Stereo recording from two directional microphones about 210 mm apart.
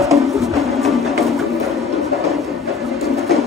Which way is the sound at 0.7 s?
Centre (ahead or behind).